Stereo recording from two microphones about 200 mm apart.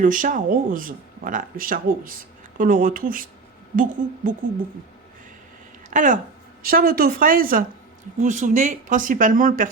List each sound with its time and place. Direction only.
0.0 s speech: 40° right (ahead or behind)
5.9 s speech: 40° right (ahead or behind)